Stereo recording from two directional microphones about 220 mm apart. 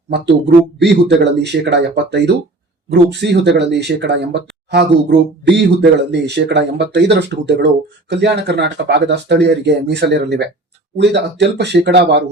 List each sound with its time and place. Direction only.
0.1 s speech: 50° right (ahead or behind)